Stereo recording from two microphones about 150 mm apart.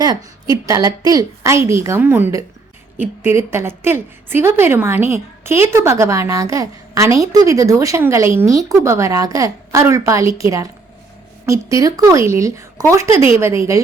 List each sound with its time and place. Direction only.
0.0 s a woman's voice: 25° right (ahead or behind)